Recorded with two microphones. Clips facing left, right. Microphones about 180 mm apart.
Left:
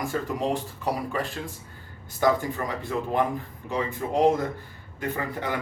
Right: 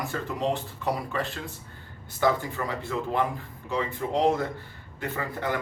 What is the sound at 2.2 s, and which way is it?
Speech, 15° left (ahead or behind).